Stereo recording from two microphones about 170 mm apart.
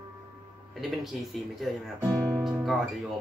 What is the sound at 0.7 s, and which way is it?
Speech, centre (ahead or behind).